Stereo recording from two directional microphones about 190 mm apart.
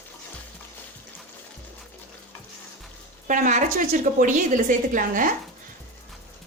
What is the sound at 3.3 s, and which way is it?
A woman's voice, 40° right (ahead or behind).